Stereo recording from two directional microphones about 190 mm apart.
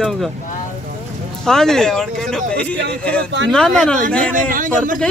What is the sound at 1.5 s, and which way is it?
A man's voice, 5° left (ahead or behind).